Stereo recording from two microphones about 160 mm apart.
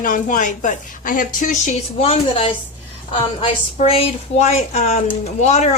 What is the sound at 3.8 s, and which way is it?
A woman's voice, 45° left (ahead or behind).